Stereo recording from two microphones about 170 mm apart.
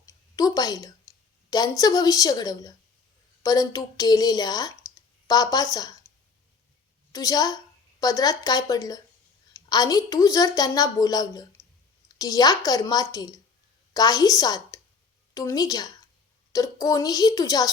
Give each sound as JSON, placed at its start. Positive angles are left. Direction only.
{"t": 0.0, "sound": "a sound", "side_deg": 20}
{"t": 1.5, "sound": "a woman's voice", "side_deg": 20}
{"t": 7.1, "sound": "a woman's voice", "side_deg": 20}